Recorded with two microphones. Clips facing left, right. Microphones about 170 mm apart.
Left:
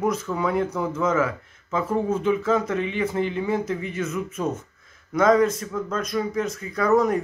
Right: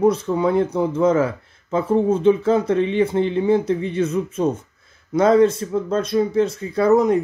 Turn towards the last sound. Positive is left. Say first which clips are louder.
# right 4 dB
turn(degrees=-25)  # may be behind; listen again after turning